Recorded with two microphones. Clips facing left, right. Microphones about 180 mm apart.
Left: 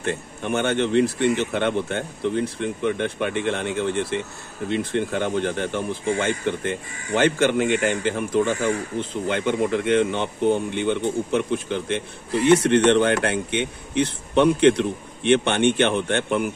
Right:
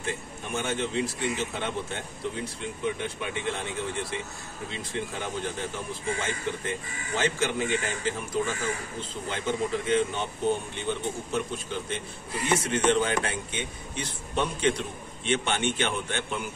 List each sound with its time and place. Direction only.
0.0 s a man's voice: 65° left (ahead or behind)